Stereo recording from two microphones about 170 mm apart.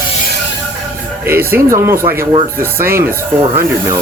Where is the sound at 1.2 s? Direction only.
15° right (ahead or behind).